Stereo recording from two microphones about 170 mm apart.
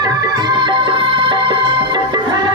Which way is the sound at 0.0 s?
25° right (ahead or behind).